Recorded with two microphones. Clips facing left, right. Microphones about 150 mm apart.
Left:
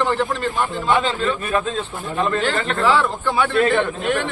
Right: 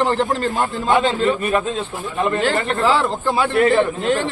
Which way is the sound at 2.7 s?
30° right (ahead or behind).